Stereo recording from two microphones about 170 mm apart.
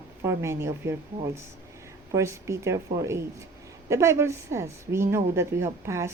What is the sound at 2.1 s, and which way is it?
Speech, 15° right (ahead or behind).